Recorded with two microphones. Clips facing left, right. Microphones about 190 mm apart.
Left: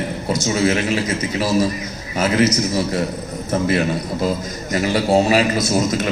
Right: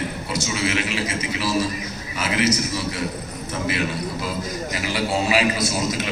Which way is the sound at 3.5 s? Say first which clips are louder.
Left 7 dB; 45° left (ahead or behind).